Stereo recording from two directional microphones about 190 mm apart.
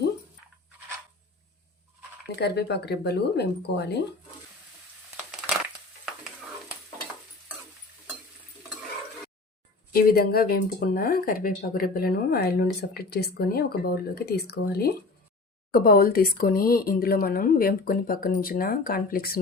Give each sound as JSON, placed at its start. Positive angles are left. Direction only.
{"t": 2.4, "sound": "speech", "side_deg": 60}
{"t": 9.9, "sound": "speech", "side_deg": 50}